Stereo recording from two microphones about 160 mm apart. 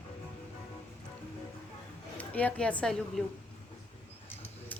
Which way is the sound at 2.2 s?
10° left (ahead or behind).